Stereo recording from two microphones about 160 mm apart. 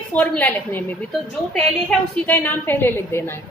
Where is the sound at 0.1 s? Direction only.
10° left (ahead or behind).